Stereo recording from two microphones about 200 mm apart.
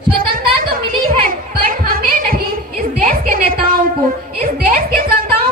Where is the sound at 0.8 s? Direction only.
45° right (ahead or behind).